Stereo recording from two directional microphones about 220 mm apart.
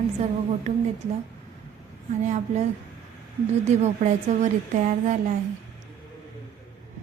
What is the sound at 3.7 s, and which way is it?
A woman's voice, 30° right (ahead or behind).